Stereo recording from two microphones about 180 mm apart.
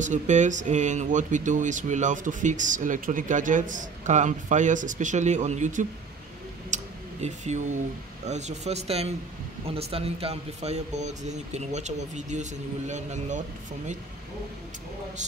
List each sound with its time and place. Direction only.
0.0 s speech: 40° right (ahead or behind)
6.7 s tick: 40° right (ahead or behind)
8.3 s speech: 40° right (ahead or behind)